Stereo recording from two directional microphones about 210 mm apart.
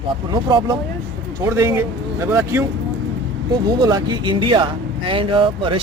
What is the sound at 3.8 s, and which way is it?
Speech, 20° right (ahead or behind).